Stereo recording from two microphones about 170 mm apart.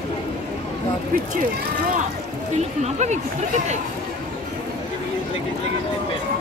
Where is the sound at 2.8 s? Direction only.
45° right (ahead or behind).